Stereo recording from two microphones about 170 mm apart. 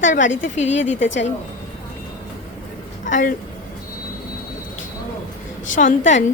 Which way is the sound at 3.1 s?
50° left (ahead or behind).